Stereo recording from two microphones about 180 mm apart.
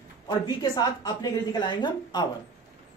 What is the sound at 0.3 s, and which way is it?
Speech, 20° left (ahead or behind).